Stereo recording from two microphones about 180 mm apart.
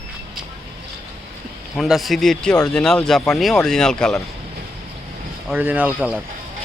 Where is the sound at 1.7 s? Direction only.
Centre (ahead or behind).